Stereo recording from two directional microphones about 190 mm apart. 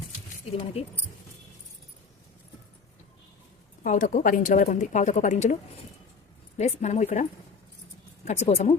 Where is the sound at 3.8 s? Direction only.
40° left (ahead or behind).